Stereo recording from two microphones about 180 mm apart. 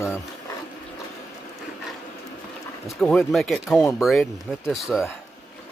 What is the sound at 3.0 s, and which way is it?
Speech, centre (ahead or behind).